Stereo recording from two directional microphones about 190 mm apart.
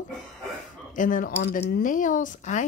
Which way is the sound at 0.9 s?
45° left (ahead or behind).